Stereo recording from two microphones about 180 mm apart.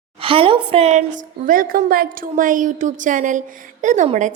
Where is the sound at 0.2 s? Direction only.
30° right (ahead or behind).